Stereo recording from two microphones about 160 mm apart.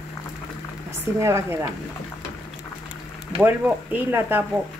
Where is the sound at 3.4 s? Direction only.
10° right (ahead or behind).